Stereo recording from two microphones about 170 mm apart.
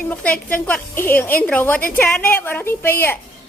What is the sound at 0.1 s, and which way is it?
A woman's voice, 10° left (ahead or behind).